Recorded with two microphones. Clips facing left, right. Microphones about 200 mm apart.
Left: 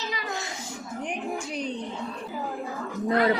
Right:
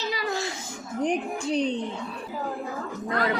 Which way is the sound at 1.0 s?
30° right (ahead or behind).